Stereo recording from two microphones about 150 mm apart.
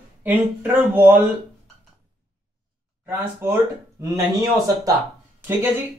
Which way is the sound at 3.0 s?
15° right (ahead or behind).